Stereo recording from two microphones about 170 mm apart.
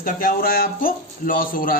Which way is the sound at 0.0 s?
55° left (ahead or behind).